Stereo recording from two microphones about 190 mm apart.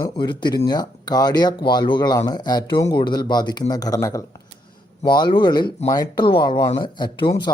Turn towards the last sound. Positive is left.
turn(degrees=25)  # may be behind; listen again after turning